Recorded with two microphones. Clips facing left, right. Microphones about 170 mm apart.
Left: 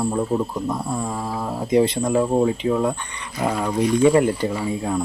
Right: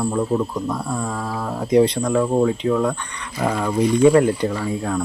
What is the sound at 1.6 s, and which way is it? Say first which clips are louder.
Speech: right 2 dB; centre (ahead or behind).